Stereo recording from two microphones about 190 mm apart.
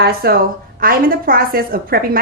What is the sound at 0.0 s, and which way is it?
A woman's voice, 55° right (ahead or behind).